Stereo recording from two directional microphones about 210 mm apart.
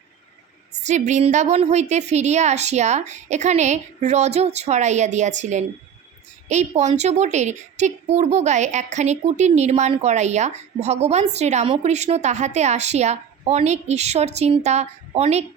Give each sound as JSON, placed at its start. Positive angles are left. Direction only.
{"t": 0.8, "sound": "a woman's voice", "side_deg": -35}